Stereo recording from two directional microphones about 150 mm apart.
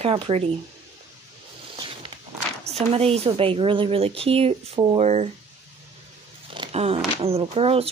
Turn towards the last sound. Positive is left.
turn(degrees=-40)  # may be behind; listen again after turning